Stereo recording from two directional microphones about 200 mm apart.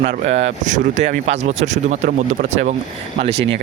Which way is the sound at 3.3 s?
65° right (ahead or behind).